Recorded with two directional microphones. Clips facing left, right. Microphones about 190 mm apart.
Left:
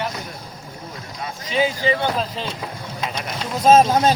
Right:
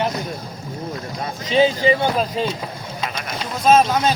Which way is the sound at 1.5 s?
25° right (ahead or behind).